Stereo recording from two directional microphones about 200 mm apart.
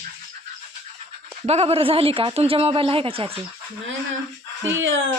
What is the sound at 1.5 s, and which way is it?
Speech, 30° right (ahead or behind).